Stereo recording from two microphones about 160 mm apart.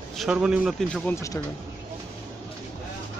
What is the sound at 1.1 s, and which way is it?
Speech, 15° left (ahead or behind).